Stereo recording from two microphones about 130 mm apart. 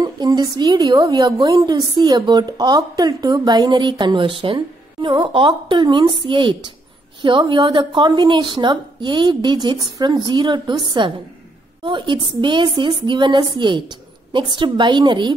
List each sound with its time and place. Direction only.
0.0 s a woman's voice: 30° right (ahead or behind)